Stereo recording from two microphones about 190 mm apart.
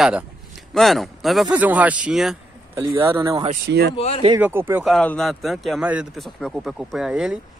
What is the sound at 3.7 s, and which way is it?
Speech, 60° right (ahead or behind).